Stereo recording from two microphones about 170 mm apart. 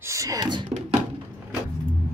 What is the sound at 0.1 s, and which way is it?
Speech, 20° right (ahead or behind).